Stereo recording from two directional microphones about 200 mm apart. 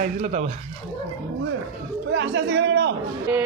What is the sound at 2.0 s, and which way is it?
Speech, 55° right (ahead or behind).